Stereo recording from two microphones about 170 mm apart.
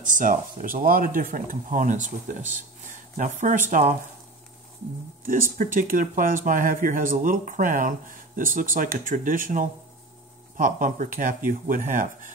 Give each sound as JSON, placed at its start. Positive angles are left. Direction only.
{"t": 0.0, "sound": "speech", "side_deg": -50}
{"t": 5.2, "sound": "speech", "side_deg": -55}